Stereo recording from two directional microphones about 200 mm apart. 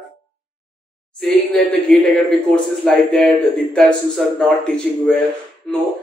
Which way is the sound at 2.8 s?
Centre (ahead or behind).